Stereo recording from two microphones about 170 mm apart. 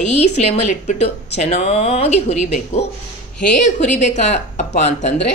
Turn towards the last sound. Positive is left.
turn(degrees=40)  # may be behind; listen again after turning